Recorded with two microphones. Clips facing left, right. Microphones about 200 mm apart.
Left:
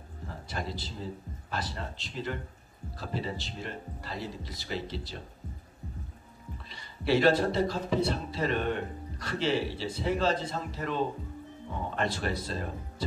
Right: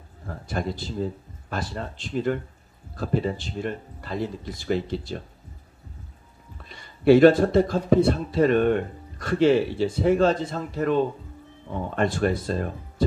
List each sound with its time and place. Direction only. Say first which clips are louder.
0.5 s a man's voice: right 8 dB; 50° right (ahead or behind)
6.7 s a man's voice: right 11 dB; 50° right (ahead or behind)